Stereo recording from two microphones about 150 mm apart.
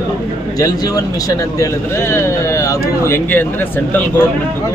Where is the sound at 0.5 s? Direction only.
25° left (ahead or behind).